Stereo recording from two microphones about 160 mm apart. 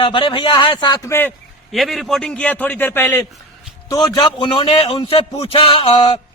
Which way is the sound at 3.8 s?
25° left (ahead or behind).